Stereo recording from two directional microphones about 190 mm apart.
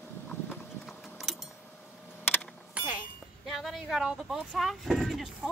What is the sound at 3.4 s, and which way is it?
Speech, centre (ahead or behind).